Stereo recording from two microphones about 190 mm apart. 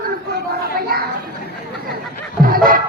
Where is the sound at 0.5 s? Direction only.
50° right (ahead or behind).